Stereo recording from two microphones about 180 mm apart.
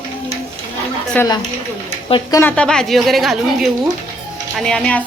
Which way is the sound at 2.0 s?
25° left (ahead or behind).